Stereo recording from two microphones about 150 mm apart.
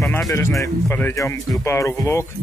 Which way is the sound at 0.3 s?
20° left (ahead or behind).